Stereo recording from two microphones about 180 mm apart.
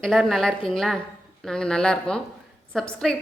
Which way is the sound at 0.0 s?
Centre (ahead or behind).